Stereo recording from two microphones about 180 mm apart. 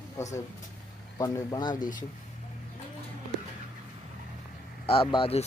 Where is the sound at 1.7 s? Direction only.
45° left (ahead or behind).